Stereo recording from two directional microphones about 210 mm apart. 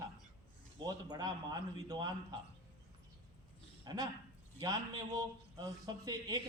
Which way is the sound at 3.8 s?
15° right (ahead or behind).